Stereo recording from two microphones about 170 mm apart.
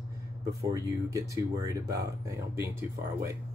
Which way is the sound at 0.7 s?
20° right (ahead or behind).